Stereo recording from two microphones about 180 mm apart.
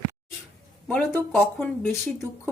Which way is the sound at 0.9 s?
10° left (ahead or behind).